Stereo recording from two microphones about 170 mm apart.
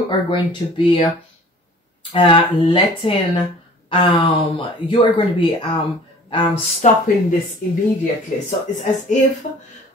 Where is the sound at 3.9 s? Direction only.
35° left (ahead or behind).